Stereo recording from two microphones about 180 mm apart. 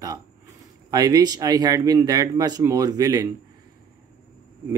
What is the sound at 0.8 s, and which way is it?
Speech, 20° right (ahead or behind).